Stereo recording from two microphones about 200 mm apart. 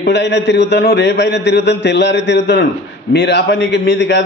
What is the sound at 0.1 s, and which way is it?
A man's voice, 60° left (ahead or behind).